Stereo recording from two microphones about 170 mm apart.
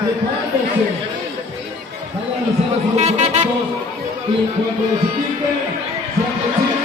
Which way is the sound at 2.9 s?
40° right (ahead or behind).